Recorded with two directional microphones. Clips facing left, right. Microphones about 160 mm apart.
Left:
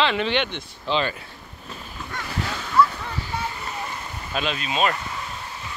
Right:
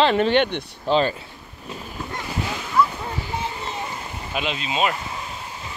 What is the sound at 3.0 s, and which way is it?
Boat, 20° right (ahead or behind).